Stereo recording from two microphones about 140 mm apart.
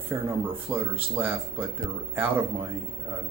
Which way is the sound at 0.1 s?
15° right (ahead or behind).